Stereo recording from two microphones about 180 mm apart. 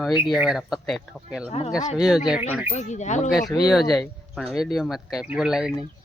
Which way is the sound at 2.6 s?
40° left (ahead or behind).